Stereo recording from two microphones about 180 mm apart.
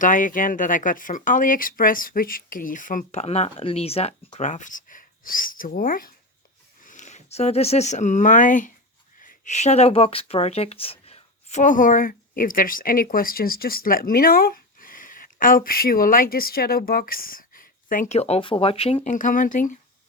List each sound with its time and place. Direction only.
0.0 s speech: 45° left (ahead or behind)